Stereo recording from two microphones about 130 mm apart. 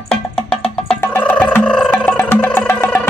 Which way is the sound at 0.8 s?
10° left (ahead or behind).